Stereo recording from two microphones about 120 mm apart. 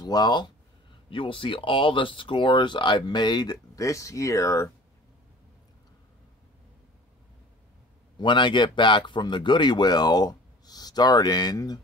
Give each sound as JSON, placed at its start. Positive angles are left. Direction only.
{"t": 0.0, "sound": "speech", "side_deg": 35}
{"t": 8.2, "sound": "speech", "side_deg": 40}